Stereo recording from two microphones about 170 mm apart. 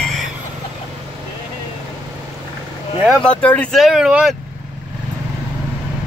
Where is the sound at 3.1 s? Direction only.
5° left (ahead or behind).